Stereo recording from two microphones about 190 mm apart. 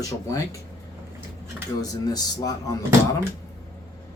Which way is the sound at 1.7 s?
20° left (ahead or behind).